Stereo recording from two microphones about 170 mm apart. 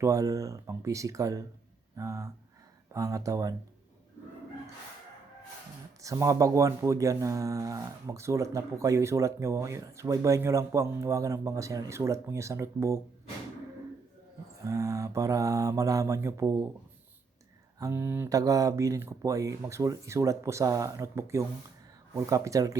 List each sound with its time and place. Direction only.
0.0 s mantra: 20° right (ahead or behind)
6.0 s speech: 20° right (ahead or behind)
14.6 s mantra: 20° right (ahead or behind)
17.7 s speech: 15° right (ahead or behind)
22.1 s mantra: 20° right (ahead or behind)